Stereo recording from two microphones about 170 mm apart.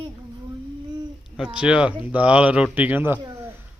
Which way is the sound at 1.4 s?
5° right (ahead or behind).